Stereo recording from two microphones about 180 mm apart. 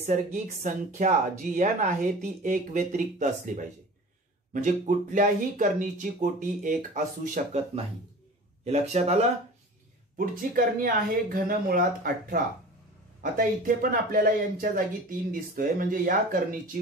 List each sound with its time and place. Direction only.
0.0 s speech: 45° right (ahead or behind)
10.1 s speech: 55° right (ahead or behind)